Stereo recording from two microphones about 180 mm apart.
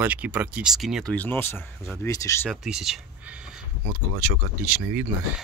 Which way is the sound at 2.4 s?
Centre (ahead or behind).